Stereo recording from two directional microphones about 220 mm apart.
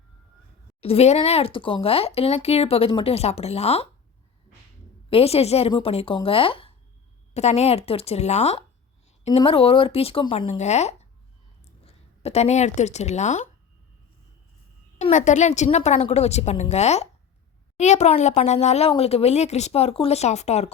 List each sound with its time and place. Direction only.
0.8 s speech: 25° left (ahead or behind)
5.0 s a woman's voice: 25° left (ahead or behind)
14.9 s a woman's voice: 35° left (ahead or behind)